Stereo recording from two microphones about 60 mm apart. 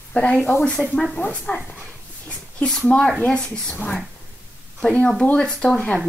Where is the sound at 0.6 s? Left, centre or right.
Centre.